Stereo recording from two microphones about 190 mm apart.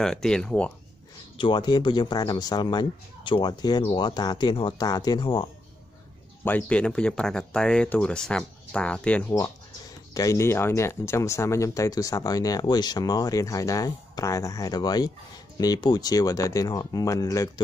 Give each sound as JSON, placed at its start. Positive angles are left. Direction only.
{"t": 0.0, "sound": "speech", "side_deg": 5}
{"t": 1.4, "sound": "speech", "side_deg": 25}
{"t": 6.4, "sound": "speech", "side_deg": 5}
{"t": 10.1, "sound": "speech", "side_deg": 15}